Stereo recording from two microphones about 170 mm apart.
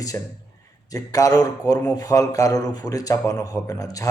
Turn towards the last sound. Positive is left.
turn(degrees=20)  # may be behind; listen again after turning